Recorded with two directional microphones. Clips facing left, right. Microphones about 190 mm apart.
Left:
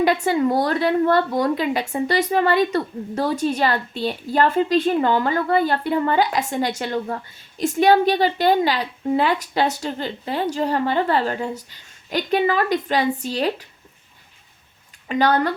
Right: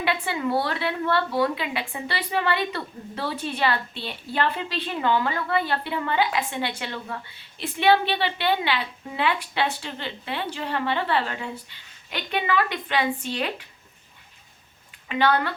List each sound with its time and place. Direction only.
0.0 s a woman's voice: 40° left (ahead or behind)
15.0 s a woman's voice: 40° left (ahead or behind)